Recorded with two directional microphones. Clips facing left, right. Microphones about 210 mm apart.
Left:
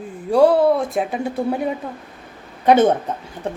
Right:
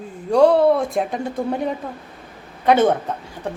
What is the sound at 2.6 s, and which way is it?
Speech, 20° left (ahead or behind).